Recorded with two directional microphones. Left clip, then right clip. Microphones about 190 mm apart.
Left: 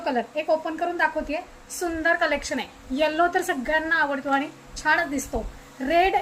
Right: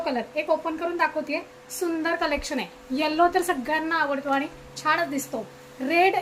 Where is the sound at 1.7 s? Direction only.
20° right (ahead or behind).